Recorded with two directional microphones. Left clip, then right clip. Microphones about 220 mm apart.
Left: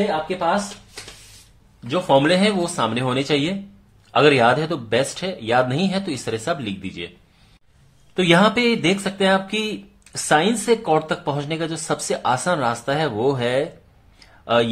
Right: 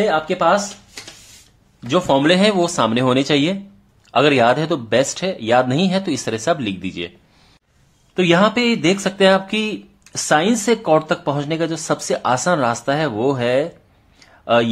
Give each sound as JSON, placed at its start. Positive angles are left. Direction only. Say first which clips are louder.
{"t": 1.9, "sound": "speech", "louder": "right 2 dB", "side_deg": -25}
{"t": 8.1, "sound": "speech", "louder": "right 1 dB", "side_deg": -10}
{"t": 14.2, "sound": "a sound", "louder": "right 3 dB", "side_deg": -15}